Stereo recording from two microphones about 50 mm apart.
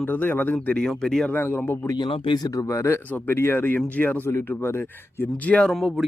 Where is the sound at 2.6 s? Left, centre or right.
Left.